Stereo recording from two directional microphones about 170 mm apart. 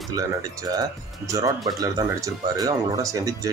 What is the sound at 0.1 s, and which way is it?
Speech, 20° right (ahead or behind).